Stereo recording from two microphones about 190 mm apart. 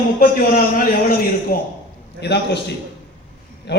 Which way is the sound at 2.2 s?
60° left (ahead or behind).